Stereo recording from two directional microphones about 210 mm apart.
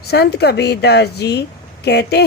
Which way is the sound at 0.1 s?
50° left (ahead or behind).